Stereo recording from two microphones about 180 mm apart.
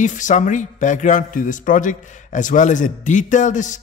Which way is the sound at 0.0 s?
45° left (ahead or behind).